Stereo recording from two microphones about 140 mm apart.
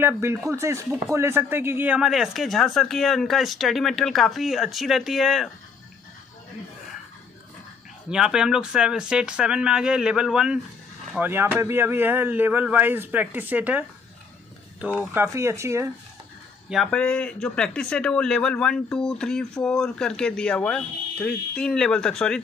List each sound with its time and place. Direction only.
0.0 s speech: 15° right (ahead or behind); by 5.5 s centre (ahead or behind)
8.1 s speech: 5° right (ahead or behind)
15.2 s speech: 20° right (ahead or behind)
16.6 s speech: centre (ahead or behind)